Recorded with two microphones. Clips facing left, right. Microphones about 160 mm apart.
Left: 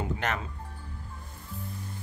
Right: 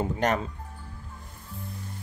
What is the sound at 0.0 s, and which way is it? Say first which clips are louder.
Music: right 6 dB; 40° right (ahead or behind).